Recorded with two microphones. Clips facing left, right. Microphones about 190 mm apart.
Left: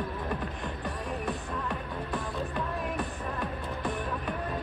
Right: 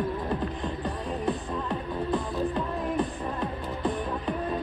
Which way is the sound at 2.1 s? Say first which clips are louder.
Right 7 dB; 20° right (ahead or behind).